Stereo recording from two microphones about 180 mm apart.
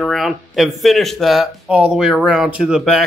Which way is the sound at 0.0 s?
Centre (ahead or behind).